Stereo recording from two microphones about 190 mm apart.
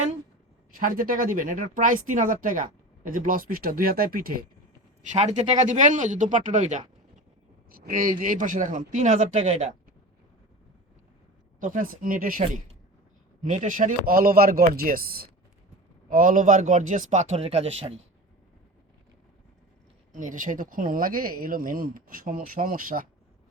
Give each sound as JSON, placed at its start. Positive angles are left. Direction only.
{"t": 0.7, "sound": "speech", "side_deg": -45}
{"t": 5.1, "sound": "speech", "side_deg": -35}
{"t": 11.6, "sound": "speech", "side_deg": -45}
{"t": 20.1, "sound": "speech", "side_deg": -45}